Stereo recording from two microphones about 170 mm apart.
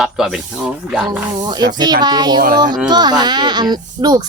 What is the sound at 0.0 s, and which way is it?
Speech, 5° right (ahead or behind).